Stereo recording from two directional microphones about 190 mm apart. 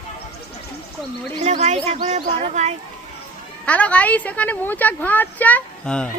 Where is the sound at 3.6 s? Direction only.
5° left (ahead or behind).